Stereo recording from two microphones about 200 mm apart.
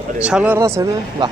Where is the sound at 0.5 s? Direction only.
15° right (ahead or behind).